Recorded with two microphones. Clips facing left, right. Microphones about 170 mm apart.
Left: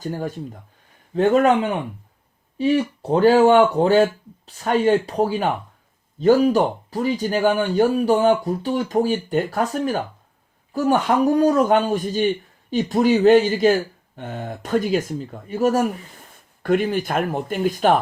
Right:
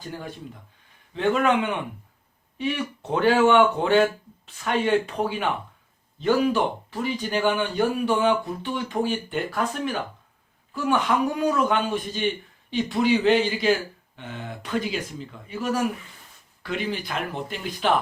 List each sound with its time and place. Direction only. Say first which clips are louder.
0.0 s speech: left 8 dB; 45° left (ahead or behind)